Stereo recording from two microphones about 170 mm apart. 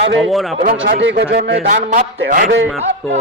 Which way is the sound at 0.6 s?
55° right (ahead or behind).